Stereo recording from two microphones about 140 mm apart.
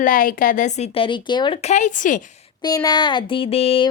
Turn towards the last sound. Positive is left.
turn(degrees=45)  # may be behind; listen again after turning